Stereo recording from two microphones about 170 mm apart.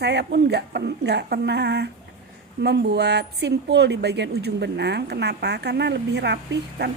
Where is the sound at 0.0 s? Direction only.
75° right (ahead or behind).